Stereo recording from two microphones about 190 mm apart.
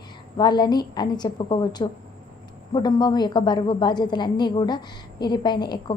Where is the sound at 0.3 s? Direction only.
20° left (ahead or behind).